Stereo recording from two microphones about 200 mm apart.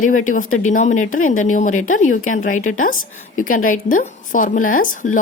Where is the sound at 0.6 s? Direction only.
40° left (ahead or behind).